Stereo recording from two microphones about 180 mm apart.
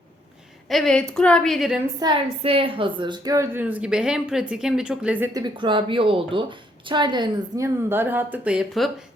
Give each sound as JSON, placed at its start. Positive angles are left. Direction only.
{"t": 0.7, "sound": "a woman's voice", "side_deg": 0}
{"t": 2.0, "sound": "a woman's voice", "side_deg": -30}
{"t": 5.3, "sound": "a woman's voice", "side_deg": -25}